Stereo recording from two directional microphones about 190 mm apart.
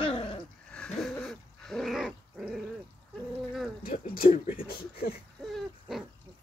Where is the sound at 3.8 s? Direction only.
50° left (ahead or behind).